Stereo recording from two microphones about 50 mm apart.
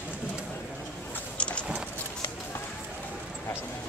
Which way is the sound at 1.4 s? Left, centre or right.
Left.